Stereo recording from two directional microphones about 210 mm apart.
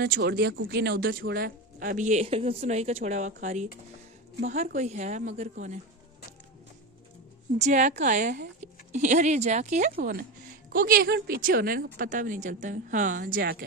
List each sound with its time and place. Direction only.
0.0 s a woman's voice: 50° right (ahead or behind); by 3.6 s 35° right (ahead or behind)
4.7 s a woman's voice: 35° right (ahead or behind)
7.5 s a woman's voice: 35° right (ahead or behind)